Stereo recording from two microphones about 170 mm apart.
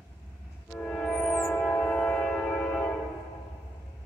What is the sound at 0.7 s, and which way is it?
Train, 5° left (ahead or behind).